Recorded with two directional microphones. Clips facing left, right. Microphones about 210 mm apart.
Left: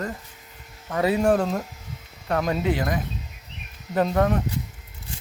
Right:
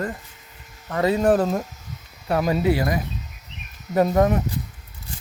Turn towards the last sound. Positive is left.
turn(degrees=-15)  # may be behind; listen again after turning